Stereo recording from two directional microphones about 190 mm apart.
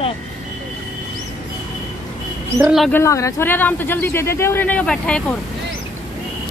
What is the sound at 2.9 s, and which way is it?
Speech, 15° left (ahead or behind).